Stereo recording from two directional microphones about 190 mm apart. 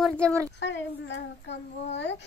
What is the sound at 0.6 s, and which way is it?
A child's voice, 70° left (ahead or behind).